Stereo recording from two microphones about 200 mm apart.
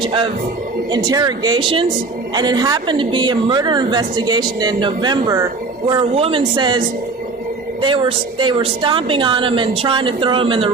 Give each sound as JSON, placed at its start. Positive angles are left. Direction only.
{"t": 0.0, "sound": "a woman's voice", "side_deg": -25}